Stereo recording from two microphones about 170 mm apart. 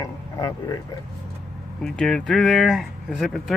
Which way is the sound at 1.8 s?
5° left (ahead or behind).